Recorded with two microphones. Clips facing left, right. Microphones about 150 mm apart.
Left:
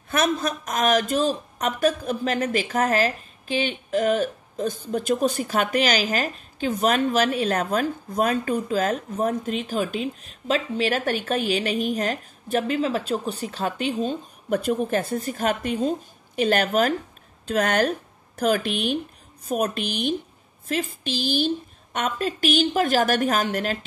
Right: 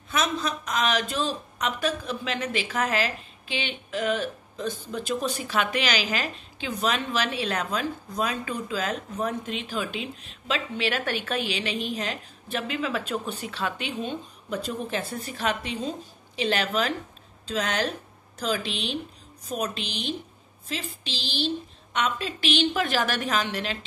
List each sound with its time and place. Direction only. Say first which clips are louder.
0.1 s a man's voice: left 4 dB; 50° left (ahead or behind)